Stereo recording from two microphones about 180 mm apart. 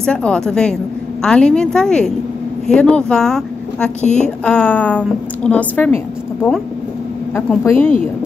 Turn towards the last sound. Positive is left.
turn(degrees=10)  # may be behind; listen again after turning